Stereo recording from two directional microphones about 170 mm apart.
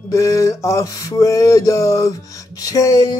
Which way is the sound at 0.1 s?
20° left (ahead or behind).